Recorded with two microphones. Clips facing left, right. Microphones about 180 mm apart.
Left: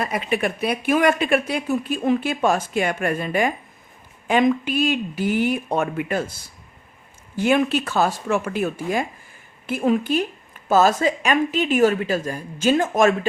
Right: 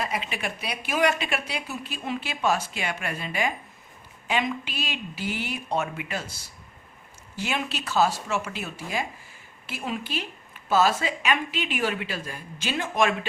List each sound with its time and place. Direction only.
0.0 s speech: 50° left (ahead or behind)